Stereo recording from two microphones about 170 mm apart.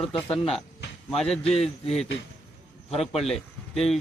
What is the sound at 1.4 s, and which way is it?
Speech, 35° left (ahead or behind).